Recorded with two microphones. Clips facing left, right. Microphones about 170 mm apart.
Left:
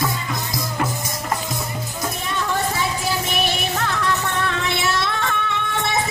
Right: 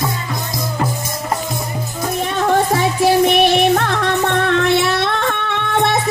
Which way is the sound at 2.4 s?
55° right (ahead or behind).